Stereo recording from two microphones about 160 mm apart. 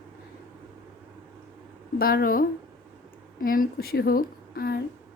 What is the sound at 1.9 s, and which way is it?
Speech, 65° left (ahead or behind).